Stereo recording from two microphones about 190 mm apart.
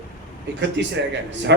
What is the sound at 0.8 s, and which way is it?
Speech, 65° right (ahead or behind).